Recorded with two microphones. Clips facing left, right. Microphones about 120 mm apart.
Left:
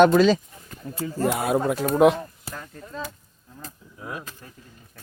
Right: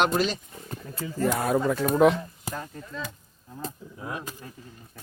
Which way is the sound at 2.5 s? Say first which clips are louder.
Right 3 dB; 10° right (ahead or behind).